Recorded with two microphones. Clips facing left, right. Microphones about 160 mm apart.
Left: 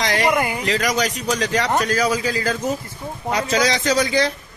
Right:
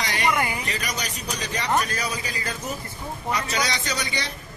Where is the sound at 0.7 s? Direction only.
90° left.